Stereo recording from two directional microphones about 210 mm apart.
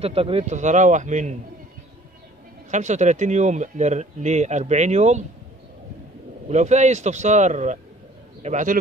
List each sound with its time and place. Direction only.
0.0 s speech: 25° right (ahead or behind)
2.7 s speech: 35° right (ahead or behind)
6.5 s a man's voice: 35° right (ahead or behind)